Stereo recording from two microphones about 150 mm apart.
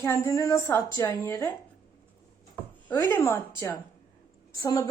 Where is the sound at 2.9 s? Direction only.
15° left (ahead or behind).